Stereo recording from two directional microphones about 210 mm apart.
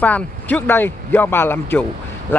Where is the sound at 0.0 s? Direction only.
5° left (ahead or behind).